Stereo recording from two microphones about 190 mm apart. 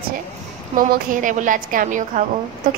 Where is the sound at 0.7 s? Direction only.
45° right (ahead or behind).